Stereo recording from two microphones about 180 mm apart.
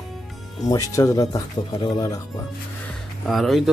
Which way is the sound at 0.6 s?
20° left (ahead or behind).